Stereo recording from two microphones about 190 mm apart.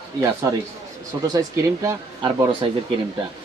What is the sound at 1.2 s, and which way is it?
Speech, 20° right (ahead or behind).